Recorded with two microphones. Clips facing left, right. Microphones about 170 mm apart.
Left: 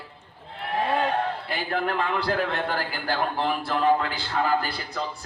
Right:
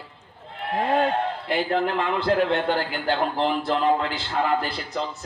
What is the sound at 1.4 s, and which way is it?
A man's voice, 25° right (ahead or behind).